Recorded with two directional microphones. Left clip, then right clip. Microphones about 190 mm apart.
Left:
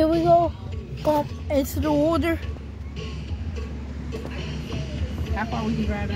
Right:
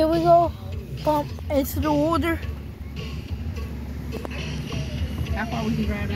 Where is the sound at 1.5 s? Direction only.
5° left (ahead or behind).